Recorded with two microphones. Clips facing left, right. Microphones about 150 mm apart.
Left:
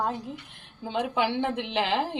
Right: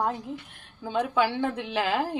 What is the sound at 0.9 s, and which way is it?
A woman's voice, 20° left (ahead or behind).